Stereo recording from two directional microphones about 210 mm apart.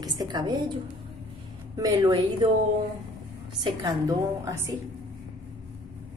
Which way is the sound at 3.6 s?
20° right (ahead or behind).